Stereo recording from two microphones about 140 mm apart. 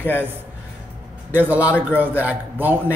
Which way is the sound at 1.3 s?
10° right (ahead or behind).